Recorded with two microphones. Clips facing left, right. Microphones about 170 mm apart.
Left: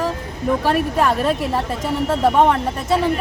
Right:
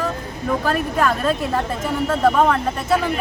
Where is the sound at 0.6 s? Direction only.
25° left (ahead or behind).